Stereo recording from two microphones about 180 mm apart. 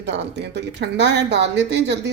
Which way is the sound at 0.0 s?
70° right (ahead or behind).